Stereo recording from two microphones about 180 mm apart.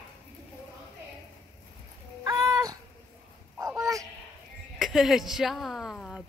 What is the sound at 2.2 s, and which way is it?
Crow, 20° right (ahead or behind).